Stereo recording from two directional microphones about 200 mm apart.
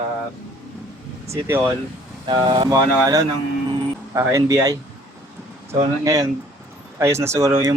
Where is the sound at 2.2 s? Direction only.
25° right (ahead or behind).